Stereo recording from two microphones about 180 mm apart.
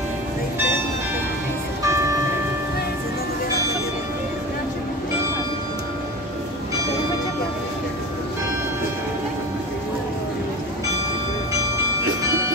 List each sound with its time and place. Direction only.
1.9 s music: 15° right (ahead or behind)